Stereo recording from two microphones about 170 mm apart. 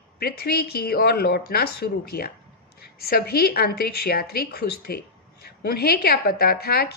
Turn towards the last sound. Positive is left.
turn(degrees=65)  # may be behind; listen again after turning